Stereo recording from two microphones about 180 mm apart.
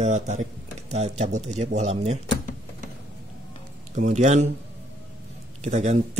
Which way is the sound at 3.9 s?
40° right (ahead or behind).